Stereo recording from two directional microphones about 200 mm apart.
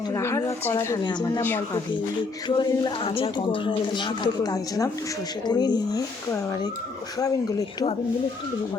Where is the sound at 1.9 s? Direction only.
20° left (ahead or behind).